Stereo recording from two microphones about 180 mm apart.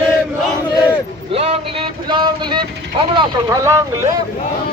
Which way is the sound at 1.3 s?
35° right (ahead or behind).